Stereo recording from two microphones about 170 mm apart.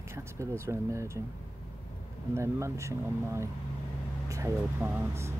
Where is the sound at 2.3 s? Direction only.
15° right (ahead or behind).